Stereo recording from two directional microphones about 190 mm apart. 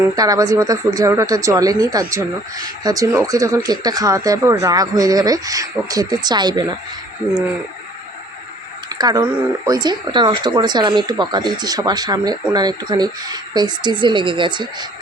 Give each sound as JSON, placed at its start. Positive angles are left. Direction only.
{"t": 0.2, "sound": "speech", "side_deg": -20}
{"t": 8.9, "sound": "a sound", "side_deg": -20}
{"t": 9.6, "sound": "speech", "side_deg": -20}